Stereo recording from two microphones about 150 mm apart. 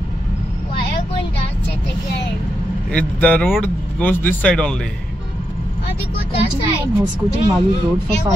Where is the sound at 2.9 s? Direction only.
10° left (ahead or behind).